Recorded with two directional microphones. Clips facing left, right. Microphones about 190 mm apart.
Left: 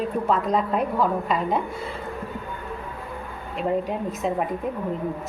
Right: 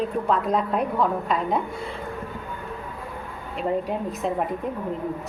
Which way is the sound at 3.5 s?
Centre (ahead or behind).